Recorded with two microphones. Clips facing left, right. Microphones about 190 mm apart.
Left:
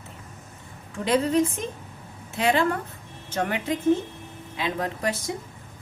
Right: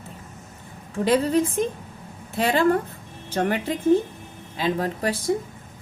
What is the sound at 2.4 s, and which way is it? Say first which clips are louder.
A woman's voice: right 3 dB; 35° right (ahead or behind).